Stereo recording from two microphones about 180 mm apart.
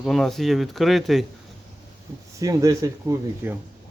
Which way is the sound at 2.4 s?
20° right (ahead or behind).